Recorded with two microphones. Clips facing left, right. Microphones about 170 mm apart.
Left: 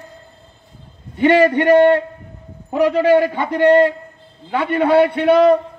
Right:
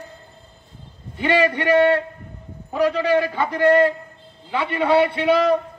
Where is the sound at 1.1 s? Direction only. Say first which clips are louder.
Left 7 dB; 55° left (ahead or behind).